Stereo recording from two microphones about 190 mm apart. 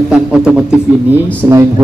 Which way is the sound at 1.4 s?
15° right (ahead or behind).